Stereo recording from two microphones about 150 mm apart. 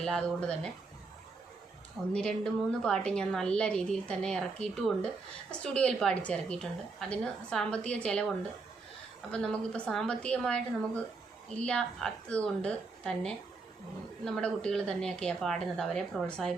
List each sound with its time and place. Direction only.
0.0 s a woman's voice: 5° left (ahead or behind)
2.1 s a woman's voice: 5° left (ahead or behind)
9.3 s a woman's voice: 5° left (ahead or behind)